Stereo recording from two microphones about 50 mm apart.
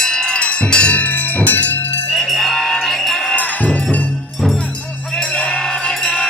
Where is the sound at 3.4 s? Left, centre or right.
Left.